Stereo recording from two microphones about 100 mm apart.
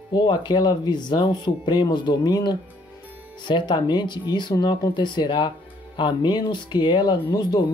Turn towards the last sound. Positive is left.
turn(degrees=45)  # may be behind; listen again after turning